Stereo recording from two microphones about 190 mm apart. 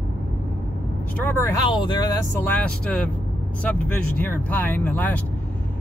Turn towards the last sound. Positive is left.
turn(degrees=10)  # may be behind; listen again after turning